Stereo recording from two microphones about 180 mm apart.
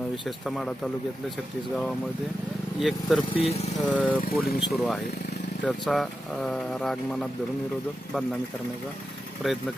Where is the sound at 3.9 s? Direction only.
10° left (ahead or behind).